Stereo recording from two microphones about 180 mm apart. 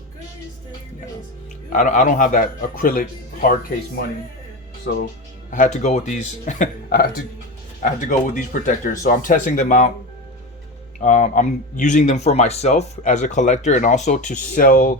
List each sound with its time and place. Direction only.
1.7 s a man's voice: 45° left (ahead or behind)
4.9 s speech: 65° left (ahead or behind)
5.5 s a man's voice: 45° left (ahead or behind)
11.0 s speech: 40° left (ahead or behind)